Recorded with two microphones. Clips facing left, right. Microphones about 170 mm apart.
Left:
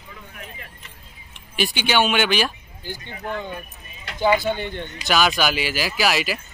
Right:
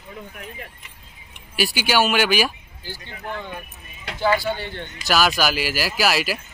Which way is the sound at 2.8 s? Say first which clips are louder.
Left 3 dB; 15° left (ahead or behind).